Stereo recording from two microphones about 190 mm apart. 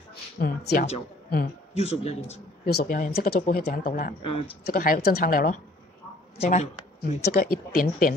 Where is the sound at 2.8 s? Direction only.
45° left (ahead or behind).